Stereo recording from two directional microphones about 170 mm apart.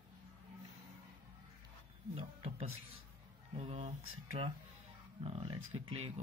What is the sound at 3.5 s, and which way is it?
Speech, 35° right (ahead or behind).